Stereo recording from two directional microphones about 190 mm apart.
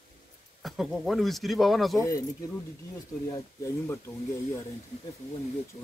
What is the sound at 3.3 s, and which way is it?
Speech, 15° left (ahead or behind).